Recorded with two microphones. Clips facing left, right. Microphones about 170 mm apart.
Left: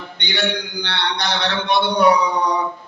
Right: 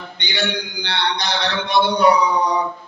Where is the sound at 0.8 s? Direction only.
65° left (ahead or behind).